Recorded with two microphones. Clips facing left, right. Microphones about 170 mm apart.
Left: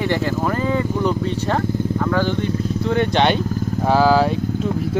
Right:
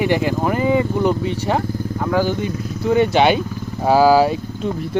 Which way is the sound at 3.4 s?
40° left (ahead or behind).